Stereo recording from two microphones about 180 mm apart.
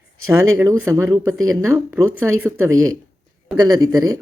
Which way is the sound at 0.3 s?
15° right (ahead or behind).